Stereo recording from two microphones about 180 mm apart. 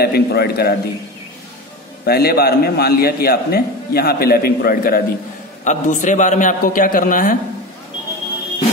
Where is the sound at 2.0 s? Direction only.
60° left (ahead or behind).